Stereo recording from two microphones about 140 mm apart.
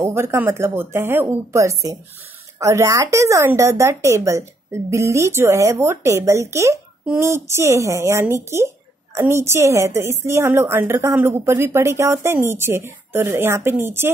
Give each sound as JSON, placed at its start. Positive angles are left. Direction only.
{"t": 0.0, "sound": "a woman's voice", "side_deg": -20}